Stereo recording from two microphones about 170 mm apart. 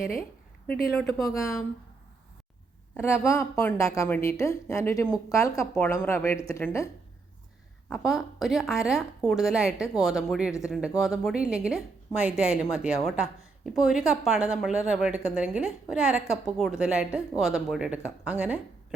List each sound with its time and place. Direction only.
0.9 s speech: centre (ahead or behind)
3.0 s a woman's voice: 15° left (ahead or behind)
7.9 s speech: centre (ahead or behind)